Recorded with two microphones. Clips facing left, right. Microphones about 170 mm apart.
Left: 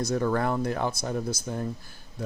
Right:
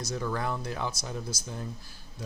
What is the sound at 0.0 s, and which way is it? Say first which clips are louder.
Speech: left 7 dB; 55° left (ahead or behind).